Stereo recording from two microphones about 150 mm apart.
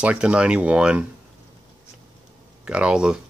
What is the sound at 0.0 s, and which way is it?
Speech, 5° right (ahead or behind).